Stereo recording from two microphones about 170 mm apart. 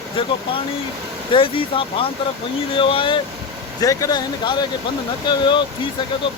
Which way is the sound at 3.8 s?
20° left (ahead or behind).